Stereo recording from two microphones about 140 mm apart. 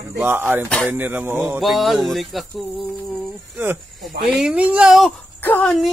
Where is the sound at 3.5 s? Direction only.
15° right (ahead or behind).